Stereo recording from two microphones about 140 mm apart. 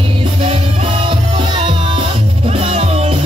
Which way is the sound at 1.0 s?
35° right (ahead or behind).